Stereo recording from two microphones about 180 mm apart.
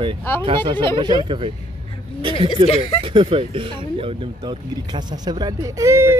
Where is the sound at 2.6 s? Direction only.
30° right (ahead or behind).